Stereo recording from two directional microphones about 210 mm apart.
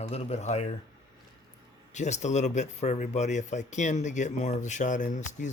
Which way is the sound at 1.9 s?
35° left (ahead or behind).